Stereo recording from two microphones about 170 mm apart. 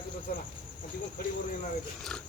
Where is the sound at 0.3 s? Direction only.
55° left (ahead or behind).